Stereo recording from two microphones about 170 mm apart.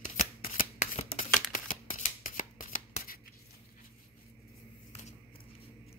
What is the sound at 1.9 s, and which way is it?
Scissors, 50° left (ahead or behind).